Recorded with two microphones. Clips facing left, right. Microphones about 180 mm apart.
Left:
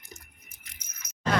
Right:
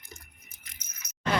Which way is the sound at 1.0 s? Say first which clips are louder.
Left 1 dB; 65° right (ahead or behind).